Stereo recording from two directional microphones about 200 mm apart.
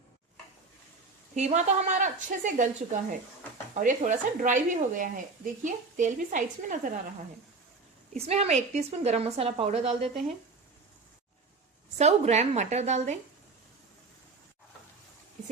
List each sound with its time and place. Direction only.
1.4 s a woman's voice: 35° right (ahead or behind)
8.1 s a woman's voice: 30° right (ahead or behind)
11.9 s a woman's voice: 35° right (ahead or behind)